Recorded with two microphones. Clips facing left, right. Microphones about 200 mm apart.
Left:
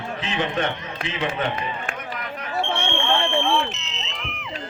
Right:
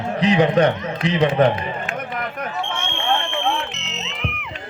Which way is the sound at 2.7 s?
35° left (ahead or behind).